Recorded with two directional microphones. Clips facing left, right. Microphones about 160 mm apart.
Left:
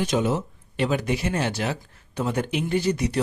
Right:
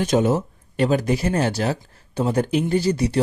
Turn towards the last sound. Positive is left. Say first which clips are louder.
# right 3 dB
turn(degrees=-30)  # may be behind; listen again after turning